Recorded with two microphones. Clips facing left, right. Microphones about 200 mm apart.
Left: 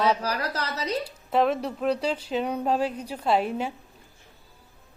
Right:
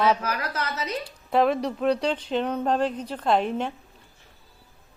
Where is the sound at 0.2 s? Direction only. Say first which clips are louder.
Even; 35° left (ahead or behind).